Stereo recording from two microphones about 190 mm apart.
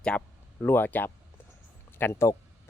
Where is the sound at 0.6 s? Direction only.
10° left (ahead or behind).